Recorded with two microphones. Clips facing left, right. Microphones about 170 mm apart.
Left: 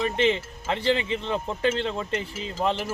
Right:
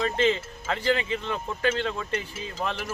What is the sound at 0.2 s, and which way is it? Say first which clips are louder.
Speech: left 1 dB; 25° left (ahead or behind).